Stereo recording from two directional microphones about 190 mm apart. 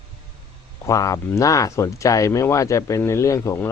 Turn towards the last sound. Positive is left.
turn(degrees=15)  # may be behind; listen again after turning